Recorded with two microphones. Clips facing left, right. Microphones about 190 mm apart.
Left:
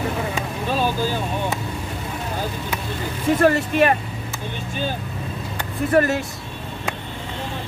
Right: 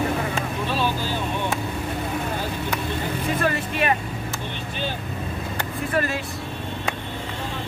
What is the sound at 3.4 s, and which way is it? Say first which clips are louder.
Speech: left 9 dB; 50° left (ahead or behind).